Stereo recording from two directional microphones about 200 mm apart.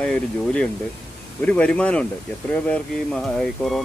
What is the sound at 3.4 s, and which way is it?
Speech, centre (ahead or behind).